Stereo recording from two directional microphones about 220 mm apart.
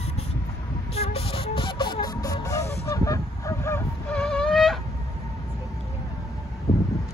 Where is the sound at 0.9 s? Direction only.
25° left (ahead or behind).